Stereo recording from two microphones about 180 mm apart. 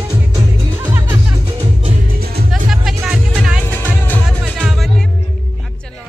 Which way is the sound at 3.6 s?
10° left (ahead or behind).